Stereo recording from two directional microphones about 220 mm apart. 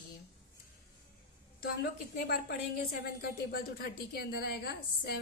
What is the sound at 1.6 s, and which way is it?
A woman's voice, 45° left (ahead or behind).